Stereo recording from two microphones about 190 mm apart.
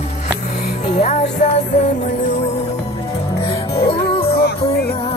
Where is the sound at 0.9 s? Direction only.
35° left (ahead or behind).